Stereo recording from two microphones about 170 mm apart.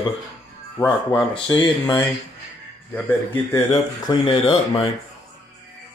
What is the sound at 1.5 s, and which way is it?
Speech, 25° left (ahead or behind).